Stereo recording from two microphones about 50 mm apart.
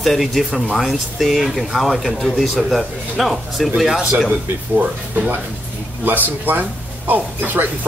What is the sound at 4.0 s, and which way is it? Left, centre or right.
Speech, centre.